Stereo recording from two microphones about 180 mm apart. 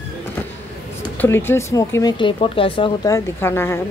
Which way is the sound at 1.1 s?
10° left (ahead or behind).